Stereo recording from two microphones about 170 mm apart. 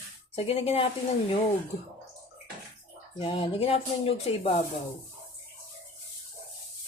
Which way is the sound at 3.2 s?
35° left (ahead or behind).